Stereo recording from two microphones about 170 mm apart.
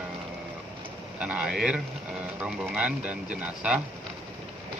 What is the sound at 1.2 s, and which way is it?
Speech, 5° right (ahead or behind).